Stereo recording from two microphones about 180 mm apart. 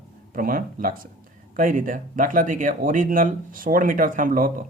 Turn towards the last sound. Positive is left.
turn(degrees=-50)  # may be behind; listen again after turning